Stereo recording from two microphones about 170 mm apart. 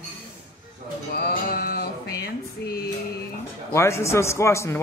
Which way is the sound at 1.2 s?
65° left (ahead or behind).